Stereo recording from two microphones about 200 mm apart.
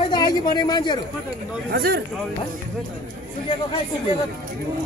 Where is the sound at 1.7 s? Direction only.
50° right (ahead or behind).